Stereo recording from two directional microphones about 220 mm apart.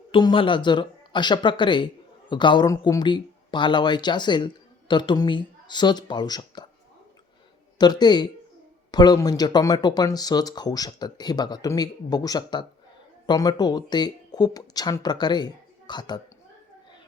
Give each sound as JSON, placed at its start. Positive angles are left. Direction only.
{"t": 0.1, "sound": "speech", "side_deg": 20}
{"t": 7.8, "sound": "speech", "side_deg": 20}